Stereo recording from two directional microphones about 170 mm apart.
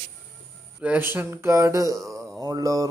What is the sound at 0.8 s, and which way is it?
A man's voice, 10° right (ahead or behind).